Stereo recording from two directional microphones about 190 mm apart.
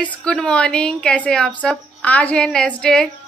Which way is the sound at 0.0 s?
5° left (ahead or behind).